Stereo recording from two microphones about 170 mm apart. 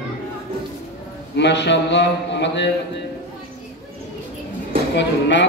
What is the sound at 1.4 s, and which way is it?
A man's voice, 90° left.